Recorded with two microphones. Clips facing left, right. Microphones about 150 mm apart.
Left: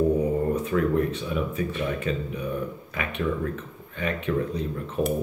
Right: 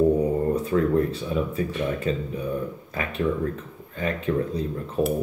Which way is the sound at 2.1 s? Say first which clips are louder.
Right 2 dB; 30° right (ahead or behind).